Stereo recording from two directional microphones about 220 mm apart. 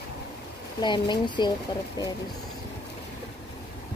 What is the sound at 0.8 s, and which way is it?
Speech, 20° left (ahead or behind).